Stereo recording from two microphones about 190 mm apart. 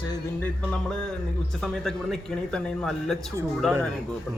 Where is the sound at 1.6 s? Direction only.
5° left (ahead or behind).